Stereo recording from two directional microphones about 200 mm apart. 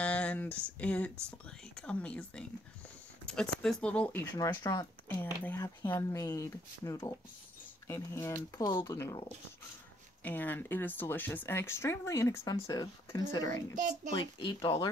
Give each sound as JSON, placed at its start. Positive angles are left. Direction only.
{"t": 0.0, "sound": "speech", "side_deg": 5}
{"t": 4.4, "sound": "speech", "side_deg": 20}
{"t": 10.2, "sound": "speech", "side_deg": 10}
{"t": 13.7, "sound": "a child's voice", "side_deg": -40}
{"t": 14.1, "sound": "speech", "side_deg": 20}